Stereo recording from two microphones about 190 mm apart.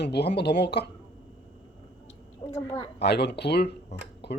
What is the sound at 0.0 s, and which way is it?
Speech, 60° left (ahead or behind).